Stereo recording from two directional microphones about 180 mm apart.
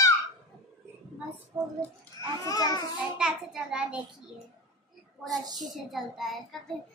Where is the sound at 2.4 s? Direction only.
20° left (ahead or behind).